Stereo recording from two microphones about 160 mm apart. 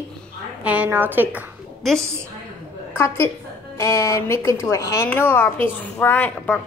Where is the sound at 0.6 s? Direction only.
10° right (ahead or behind).